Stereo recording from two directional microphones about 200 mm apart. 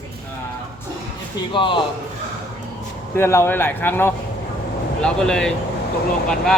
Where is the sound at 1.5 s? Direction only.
25° left (ahead or behind).